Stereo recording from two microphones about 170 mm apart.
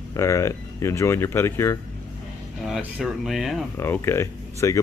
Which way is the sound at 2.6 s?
Centre (ahead or behind).